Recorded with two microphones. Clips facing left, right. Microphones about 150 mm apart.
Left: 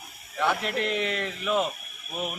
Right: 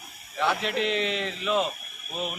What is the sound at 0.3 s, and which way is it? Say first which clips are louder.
Speech: even; 10° left (ahead or behind).